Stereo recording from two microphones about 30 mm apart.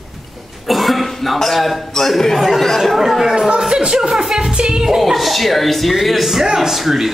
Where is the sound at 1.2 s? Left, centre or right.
Centre.